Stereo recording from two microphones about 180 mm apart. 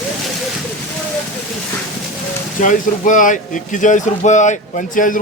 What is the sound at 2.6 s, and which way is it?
Speech, 45° left (ahead or behind).